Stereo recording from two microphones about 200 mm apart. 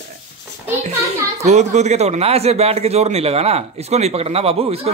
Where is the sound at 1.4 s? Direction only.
35° right (ahead or behind).